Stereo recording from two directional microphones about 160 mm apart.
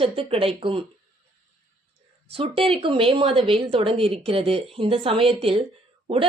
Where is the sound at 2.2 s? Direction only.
35° right (ahead or behind).